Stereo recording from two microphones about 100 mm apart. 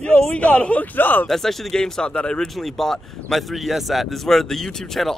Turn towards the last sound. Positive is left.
turn(degrees=5)  # may be behind; listen again after turning